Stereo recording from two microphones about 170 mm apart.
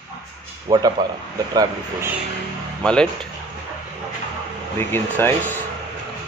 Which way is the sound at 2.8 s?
5° left (ahead or behind).